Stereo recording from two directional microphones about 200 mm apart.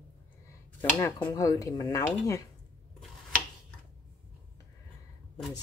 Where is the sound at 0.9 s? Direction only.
10° left (ahead or behind).